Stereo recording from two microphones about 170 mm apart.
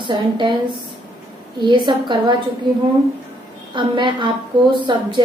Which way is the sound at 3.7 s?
30° right (ahead or behind).